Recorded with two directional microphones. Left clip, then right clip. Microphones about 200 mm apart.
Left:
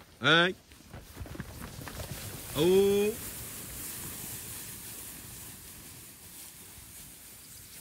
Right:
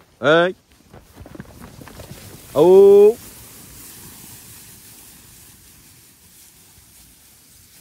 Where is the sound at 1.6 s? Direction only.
35° right (ahead or behind).